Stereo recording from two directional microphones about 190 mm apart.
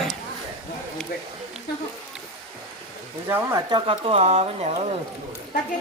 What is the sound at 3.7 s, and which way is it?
Speech, 25° right (ahead or behind).